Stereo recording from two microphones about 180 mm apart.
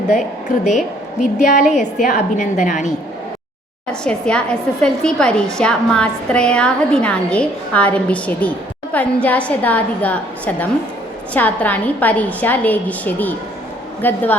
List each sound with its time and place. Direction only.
1.2 s a woman's voice: 45° left (ahead or behind)
4.0 s a woman's voice: 5° left (ahead or behind)